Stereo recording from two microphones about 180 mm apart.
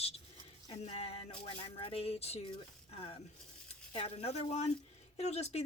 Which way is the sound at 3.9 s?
35° left (ahead or behind).